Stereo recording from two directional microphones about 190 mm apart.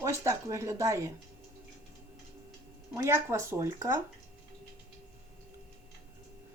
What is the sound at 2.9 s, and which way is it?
Speech, 15° right (ahead or behind).